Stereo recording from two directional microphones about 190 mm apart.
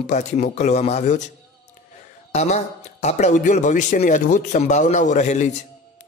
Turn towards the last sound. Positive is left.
turn(degrees=40)  # may be behind; listen again after turning